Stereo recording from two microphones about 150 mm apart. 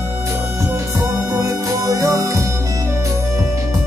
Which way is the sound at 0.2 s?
20° right (ahead or behind).